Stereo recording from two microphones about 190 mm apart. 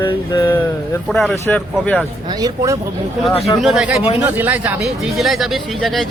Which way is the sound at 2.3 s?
20° right (ahead or behind).